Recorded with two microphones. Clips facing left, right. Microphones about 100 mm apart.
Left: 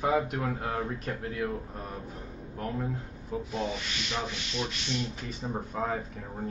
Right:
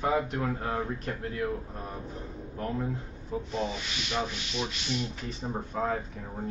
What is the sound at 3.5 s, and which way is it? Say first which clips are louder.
Sanding: right 1 dB; centre (ahead or behind).